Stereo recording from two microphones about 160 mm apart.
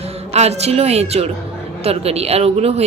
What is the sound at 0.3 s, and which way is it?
A woman's voice, 40° right (ahead or behind).